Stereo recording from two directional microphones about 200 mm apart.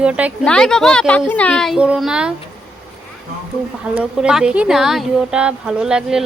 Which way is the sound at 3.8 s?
5° right (ahead or behind).